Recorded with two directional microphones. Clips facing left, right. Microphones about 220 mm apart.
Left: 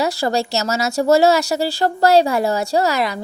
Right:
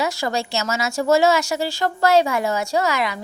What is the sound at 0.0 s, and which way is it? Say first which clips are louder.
A woman's voice: left 4 dB; 35° left (ahead or behind).